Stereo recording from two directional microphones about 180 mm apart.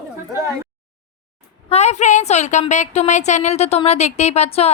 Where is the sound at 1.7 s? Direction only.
40° left (ahead or behind).